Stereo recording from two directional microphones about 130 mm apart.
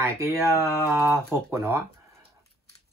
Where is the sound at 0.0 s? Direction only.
20° right (ahead or behind).